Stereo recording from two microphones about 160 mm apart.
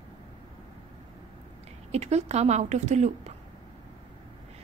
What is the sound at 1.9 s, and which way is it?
A woman's voice, 40° right (ahead or behind).